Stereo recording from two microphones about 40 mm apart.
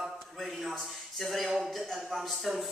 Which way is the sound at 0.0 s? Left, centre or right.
Centre.